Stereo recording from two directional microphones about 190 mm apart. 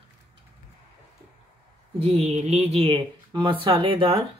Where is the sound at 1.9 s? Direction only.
35° right (ahead or behind).